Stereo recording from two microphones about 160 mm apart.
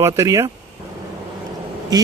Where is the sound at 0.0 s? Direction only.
15° right (ahead or behind).